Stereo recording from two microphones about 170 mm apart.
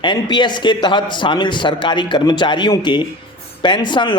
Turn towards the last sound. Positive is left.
turn(degrees=30)  # may be behind; listen again after turning